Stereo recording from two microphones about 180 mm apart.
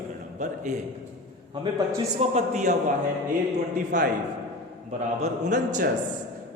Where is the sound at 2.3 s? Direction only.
40° right (ahead or behind).